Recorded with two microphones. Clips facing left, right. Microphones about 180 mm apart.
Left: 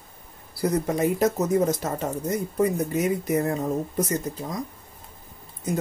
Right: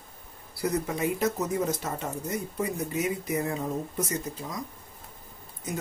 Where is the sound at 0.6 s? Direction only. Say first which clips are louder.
Left 5 dB; 40° left (ahead or behind).